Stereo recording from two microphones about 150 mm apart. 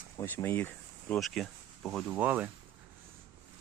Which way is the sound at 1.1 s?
Centre (ahead or behind).